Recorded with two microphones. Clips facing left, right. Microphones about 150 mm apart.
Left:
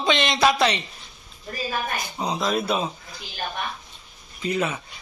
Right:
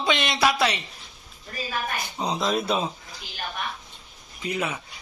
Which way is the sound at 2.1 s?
5° left (ahead or behind).